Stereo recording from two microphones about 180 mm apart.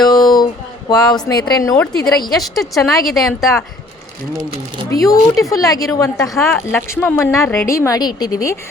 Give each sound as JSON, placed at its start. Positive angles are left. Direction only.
{"t": 0.0, "sound": "a sound", "side_deg": 20}
{"t": 0.9, "sound": "a woman's voice", "side_deg": 20}
{"t": 2.4, "sound": "speech", "side_deg": 0}
{"t": 4.5, "sound": "speech", "side_deg": -30}
{"t": 4.9, "sound": "a woman's voice", "side_deg": 20}